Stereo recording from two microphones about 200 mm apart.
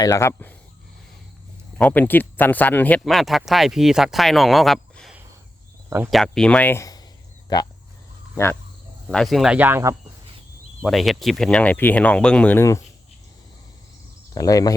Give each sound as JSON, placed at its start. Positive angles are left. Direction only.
{"t": 0.0, "sound": "speech", "side_deg": 15}
{"t": 1.8, "sound": "speech", "side_deg": 10}
{"t": 9.0, "sound": "speech", "side_deg": 0}
{"t": 10.8, "sound": "speech", "side_deg": 0}
{"t": 14.3, "sound": "speech", "side_deg": 15}